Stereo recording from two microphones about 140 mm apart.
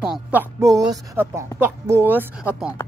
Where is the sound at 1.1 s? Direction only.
15° right (ahead or behind).